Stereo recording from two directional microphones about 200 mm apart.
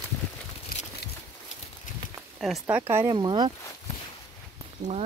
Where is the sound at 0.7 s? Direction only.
45° left (ahead or behind).